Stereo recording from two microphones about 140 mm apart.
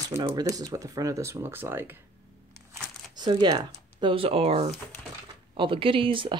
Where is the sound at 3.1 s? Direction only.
30° right (ahead or behind).